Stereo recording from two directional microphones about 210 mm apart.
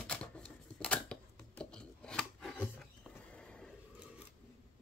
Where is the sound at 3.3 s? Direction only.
5° left (ahead or behind).